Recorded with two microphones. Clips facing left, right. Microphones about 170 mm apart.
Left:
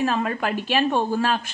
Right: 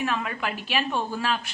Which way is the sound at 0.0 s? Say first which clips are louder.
Left 5 dB; 40° left (ahead or behind).